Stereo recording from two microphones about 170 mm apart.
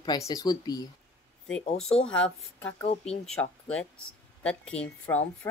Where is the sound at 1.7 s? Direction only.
40° left (ahead or behind).